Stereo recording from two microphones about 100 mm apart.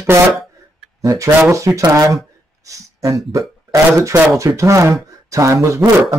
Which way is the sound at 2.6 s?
35° right (ahead or behind).